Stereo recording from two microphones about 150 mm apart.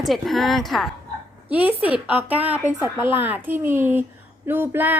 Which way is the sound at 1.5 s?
10° right (ahead or behind).